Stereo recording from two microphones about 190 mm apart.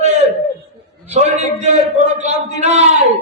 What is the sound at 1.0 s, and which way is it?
A man's voice, 35° right (ahead or behind).